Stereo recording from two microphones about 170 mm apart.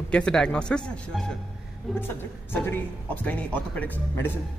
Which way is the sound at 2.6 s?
10° left (ahead or behind).